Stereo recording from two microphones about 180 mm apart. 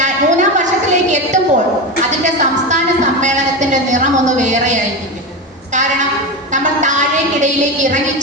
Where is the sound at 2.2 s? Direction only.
40° right (ahead or behind).